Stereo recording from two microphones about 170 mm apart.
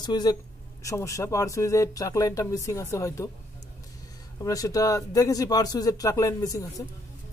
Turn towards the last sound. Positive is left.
turn(degrees=20)  # may be behind; listen again after turning